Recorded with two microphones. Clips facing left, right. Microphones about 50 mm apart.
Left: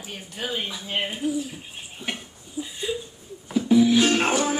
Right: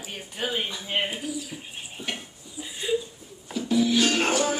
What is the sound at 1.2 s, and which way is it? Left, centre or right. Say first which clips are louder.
Bird: left 7 dB; left.